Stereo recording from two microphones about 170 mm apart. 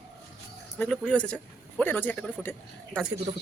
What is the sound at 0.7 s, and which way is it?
A man's voice, 5° left (ahead or behind).